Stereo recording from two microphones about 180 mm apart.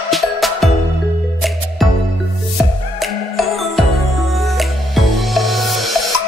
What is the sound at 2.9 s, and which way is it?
Music, centre (ahead or behind).